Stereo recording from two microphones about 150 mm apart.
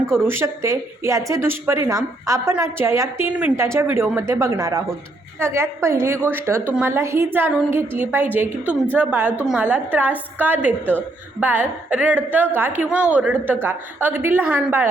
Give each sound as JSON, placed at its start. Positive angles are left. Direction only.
{"t": 0.3, "sound": "a woman's voice", "side_deg": -15}